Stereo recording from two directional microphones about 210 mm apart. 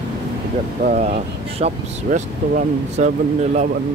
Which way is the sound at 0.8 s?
35° right (ahead or behind).